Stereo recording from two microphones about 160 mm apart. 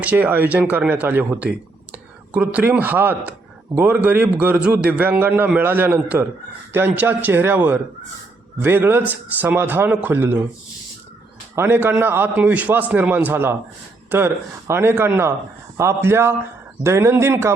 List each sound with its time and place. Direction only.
0.0 s a man's voice: 10° right (ahead or behind)
11.5 s a man's voice: 15° right (ahead or behind)